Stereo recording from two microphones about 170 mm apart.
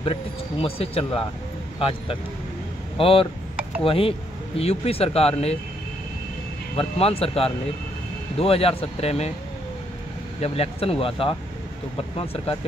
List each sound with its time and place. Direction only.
0.0 s speech: 35° left (ahead or behind)
6.8 s speech: 35° left (ahead or behind)
10.4 s speech: 35° left (ahead or behind)